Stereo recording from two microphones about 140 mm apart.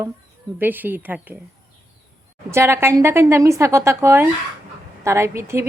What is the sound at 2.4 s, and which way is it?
A woman's voice, 20° right (ahead or behind).